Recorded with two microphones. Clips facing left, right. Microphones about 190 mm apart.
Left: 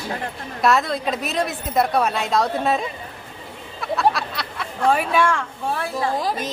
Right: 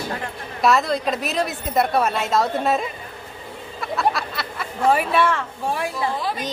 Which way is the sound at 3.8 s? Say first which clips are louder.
Left 2 dB; centre (ahead or behind).